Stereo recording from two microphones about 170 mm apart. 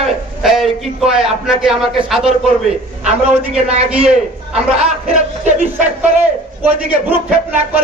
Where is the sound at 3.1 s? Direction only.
40° right (ahead or behind).